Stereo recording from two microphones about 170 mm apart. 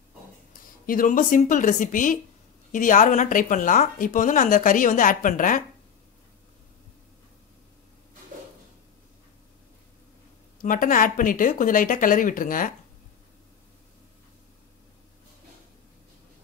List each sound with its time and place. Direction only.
0.8 s a woman's voice: 55° left (ahead or behind)
10.6 s a woman's voice: 55° left (ahead or behind)